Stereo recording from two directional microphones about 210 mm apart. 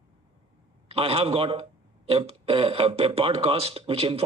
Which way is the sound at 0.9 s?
25° right (ahead or behind).